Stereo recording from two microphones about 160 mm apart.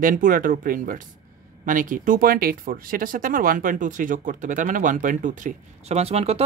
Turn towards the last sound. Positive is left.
turn(degrees=-40)  # may be behind; listen again after turning